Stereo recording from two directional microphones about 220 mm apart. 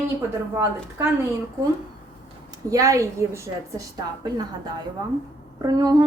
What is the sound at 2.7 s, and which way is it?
Speech, 15° right (ahead or behind).